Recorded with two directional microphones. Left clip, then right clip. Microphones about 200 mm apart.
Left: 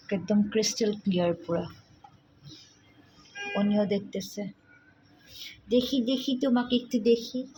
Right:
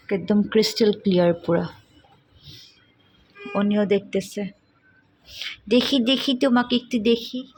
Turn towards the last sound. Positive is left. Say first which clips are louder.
# right 3 dB
turn(degrees=-20)  # may be behind; listen again after turning